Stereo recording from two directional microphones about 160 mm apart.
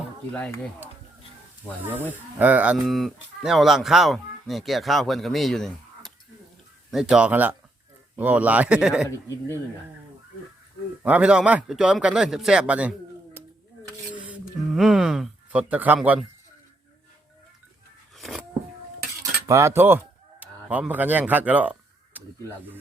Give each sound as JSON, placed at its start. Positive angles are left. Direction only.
{"t": 0.3, "sound": "speech", "side_deg": 5}
{"t": 1.9, "sound": "speech", "side_deg": -10}
{"t": 11.0, "sound": "speech", "side_deg": -10}
{"t": 18.2, "sound": "a sound", "side_deg": 0}
{"t": 19.2, "sound": "a sound", "side_deg": -20}
{"t": 20.7, "sound": "speech", "side_deg": -10}